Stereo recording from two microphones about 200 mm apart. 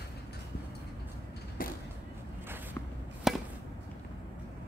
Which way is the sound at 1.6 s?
45° left (ahead or behind).